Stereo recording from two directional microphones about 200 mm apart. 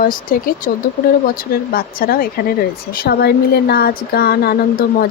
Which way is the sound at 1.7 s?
45° left (ahead or behind).